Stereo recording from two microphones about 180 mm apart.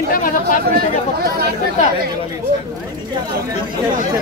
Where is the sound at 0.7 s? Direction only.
60° right (ahead or behind).